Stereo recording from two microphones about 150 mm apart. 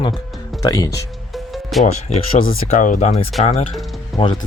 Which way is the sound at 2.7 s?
60° left (ahead or behind).